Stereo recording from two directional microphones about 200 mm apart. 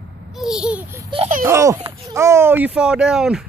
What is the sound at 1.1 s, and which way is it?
Speech, 30° right (ahead or behind).